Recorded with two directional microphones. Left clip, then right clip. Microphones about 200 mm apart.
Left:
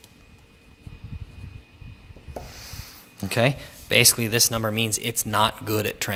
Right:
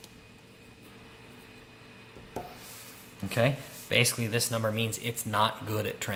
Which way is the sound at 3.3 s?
55° left (ahead or behind).